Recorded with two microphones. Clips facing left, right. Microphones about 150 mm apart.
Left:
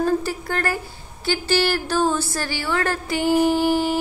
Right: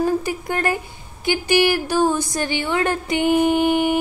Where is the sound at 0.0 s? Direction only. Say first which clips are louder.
Right 1 dB; 15° right (ahead or behind).